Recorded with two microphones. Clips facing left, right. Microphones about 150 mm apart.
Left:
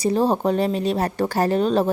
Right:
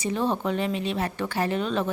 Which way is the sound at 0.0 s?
35° left (ahead or behind).